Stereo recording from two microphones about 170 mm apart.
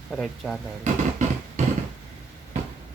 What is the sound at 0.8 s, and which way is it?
Music, 45° right (ahead or behind).